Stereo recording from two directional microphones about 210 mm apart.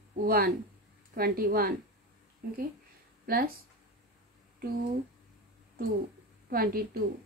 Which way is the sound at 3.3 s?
45° right (ahead or behind).